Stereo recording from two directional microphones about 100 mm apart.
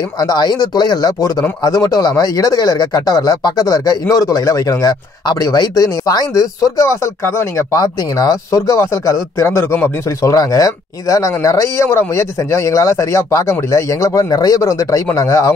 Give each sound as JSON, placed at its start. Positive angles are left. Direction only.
{"t": 0.2, "sound": "speech", "side_deg": 40}
{"t": 7.7, "sound": "speech", "side_deg": 40}
{"t": 10.0, "sound": "speech", "side_deg": 35}